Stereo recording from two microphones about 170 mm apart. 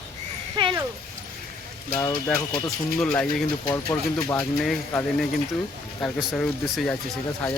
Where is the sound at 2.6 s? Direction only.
5° left (ahead or behind).